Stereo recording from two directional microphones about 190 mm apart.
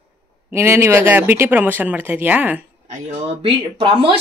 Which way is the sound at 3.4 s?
25° right (ahead or behind).